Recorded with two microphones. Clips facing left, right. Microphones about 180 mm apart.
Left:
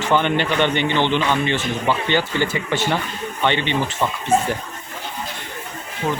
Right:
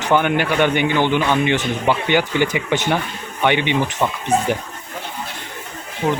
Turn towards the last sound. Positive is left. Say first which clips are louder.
# right 3 dB
turn(degrees=-15)  # may be behind; listen again after turning